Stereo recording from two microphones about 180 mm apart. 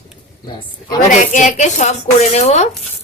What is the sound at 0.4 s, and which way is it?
Speech, 20° left (ahead or behind).